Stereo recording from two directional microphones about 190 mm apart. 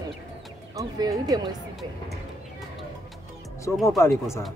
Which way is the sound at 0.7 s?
20° right (ahead or behind).